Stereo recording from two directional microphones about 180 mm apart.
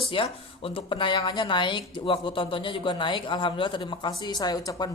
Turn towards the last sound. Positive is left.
turn(degrees=20)  # may be behind; listen again after turning